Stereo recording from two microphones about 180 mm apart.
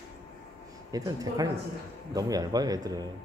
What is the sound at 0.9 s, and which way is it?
Speech, 20° right (ahead or behind).